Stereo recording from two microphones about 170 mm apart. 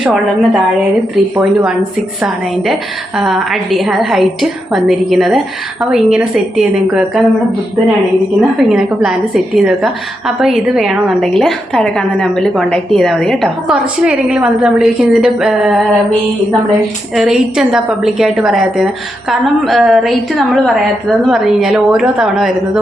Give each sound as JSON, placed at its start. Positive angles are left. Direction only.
{"t": 0.0, "sound": "a woman's voice", "side_deg": -5}
{"t": 3.2, "sound": "a woman's voice", "side_deg": 0}
{"t": 8.4, "sound": "a woman's voice", "side_deg": 0}
{"t": 17.2, "sound": "a woman's voice", "side_deg": 0}